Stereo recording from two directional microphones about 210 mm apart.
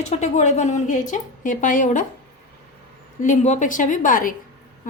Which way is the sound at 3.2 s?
35° left (ahead or behind).